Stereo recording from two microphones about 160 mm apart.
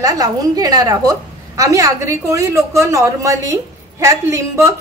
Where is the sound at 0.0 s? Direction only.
20° right (ahead or behind).